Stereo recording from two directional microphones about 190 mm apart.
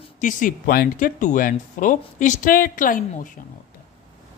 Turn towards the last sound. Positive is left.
turn(degrees=45)  # may be behind; listen again after turning